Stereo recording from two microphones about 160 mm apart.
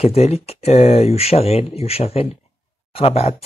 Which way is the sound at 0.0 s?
40° left (ahead or behind).